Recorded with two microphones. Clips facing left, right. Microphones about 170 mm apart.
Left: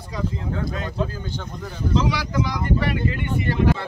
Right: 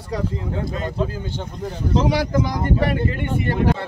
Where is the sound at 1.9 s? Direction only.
50° right (ahead or behind).